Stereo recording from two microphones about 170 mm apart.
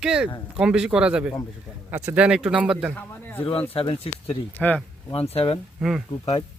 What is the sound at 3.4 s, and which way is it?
Speech, 35° left (ahead or behind).